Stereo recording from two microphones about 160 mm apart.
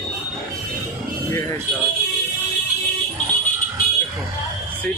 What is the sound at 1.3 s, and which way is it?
Speech, 20° left (ahead or behind).